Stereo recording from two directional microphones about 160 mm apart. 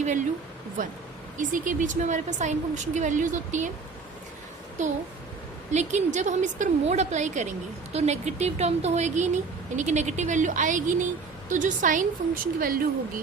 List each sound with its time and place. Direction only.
1.4 s speech: 55° right (ahead or behind)
4.8 s speech: 50° right (ahead or behind); by 12.8 s 65° right (ahead or behind)